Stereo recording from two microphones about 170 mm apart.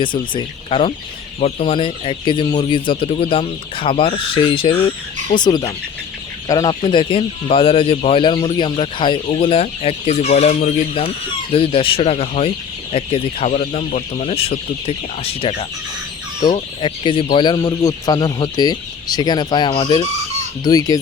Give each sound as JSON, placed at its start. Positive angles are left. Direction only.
{"t": 0.0, "sound": "speech", "side_deg": 30}